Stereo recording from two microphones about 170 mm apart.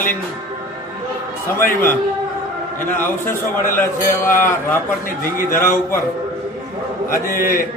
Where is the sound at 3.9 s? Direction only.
55° left (ahead or behind).